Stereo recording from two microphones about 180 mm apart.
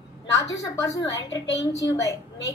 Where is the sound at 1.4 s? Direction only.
90° left.